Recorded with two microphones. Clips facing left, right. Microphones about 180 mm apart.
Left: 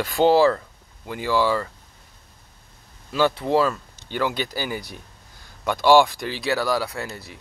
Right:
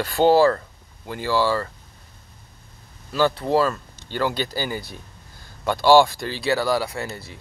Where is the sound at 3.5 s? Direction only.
Centre (ahead or behind).